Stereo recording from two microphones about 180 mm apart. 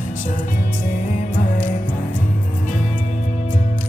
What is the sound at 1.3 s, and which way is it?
Music, 45° left (ahead or behind).